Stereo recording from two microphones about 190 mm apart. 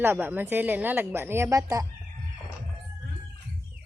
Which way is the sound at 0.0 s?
10° right (ahead or behind).